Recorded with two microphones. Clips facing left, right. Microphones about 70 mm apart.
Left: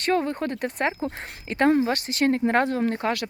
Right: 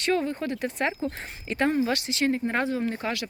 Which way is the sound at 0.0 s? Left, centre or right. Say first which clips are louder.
Left 2 dB; left.